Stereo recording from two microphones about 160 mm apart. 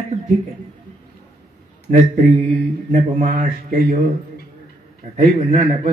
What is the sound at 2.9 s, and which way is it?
Speech, 50° right (ahead or behind).